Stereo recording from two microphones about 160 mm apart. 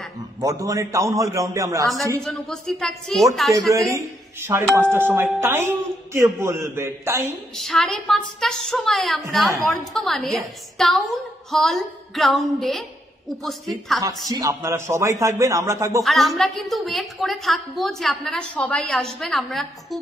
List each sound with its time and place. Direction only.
0.4 s speech: 20° right (ahead or behind)
2.2 s a woman's voice: 5° left (ahead or behind)
3.9 s a man's voice: 20° right (ahead or behind)
7.5 s a woman's voice: centre (ahead or behind)
14.0 s speech: 20° right (ahead or behind)
16.0 s a woman's voice: centre (ahead or behind)